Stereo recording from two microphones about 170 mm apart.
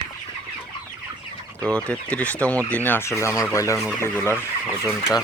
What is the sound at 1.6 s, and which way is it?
Speech, 5° left (ahead or behind).